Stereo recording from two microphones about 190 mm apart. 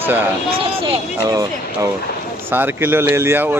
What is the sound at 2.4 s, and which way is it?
Speech, 10° right (ahead or behind).